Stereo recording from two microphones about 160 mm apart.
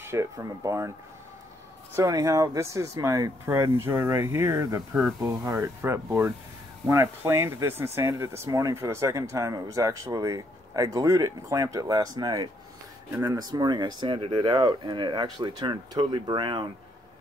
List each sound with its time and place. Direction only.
0.0 s speech: 15° right (ahead or behind)
2.0 s speech: 20° right (ahead or behind)